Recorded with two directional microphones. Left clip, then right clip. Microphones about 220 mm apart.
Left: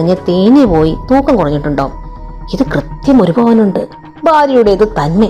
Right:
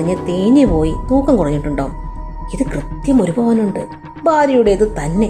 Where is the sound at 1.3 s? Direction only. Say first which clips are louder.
Left 4 dB; 15° left (ahead or behind).